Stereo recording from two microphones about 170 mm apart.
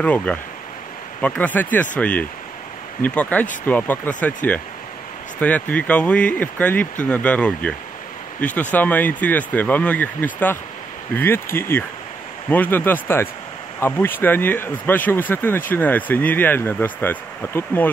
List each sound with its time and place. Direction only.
0.0 s speech: 10° left (ahead or behind)